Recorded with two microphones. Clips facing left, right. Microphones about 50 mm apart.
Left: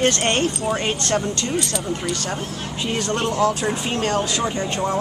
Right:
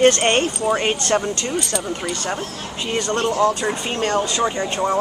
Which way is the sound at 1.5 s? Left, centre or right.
Centre.